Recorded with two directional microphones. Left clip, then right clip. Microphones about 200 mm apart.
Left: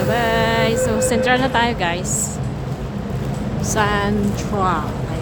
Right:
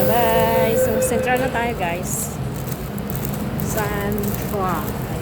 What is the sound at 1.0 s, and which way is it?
Speech, 15° left (ahead or behind).